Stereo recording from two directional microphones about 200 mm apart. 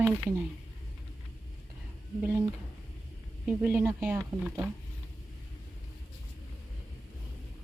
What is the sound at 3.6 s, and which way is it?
Speech, 5° right (ahead or behind).